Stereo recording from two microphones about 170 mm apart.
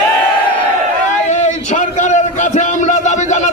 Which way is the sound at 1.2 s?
45° left (ahead or behind).